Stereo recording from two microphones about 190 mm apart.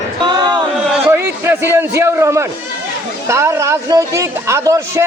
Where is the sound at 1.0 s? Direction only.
10° right (ahead or behind).